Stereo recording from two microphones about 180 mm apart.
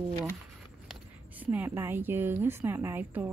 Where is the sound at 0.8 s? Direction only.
10° right (ahead or behind).